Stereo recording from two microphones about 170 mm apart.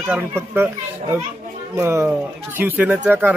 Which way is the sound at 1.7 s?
15° right (ahead or behind).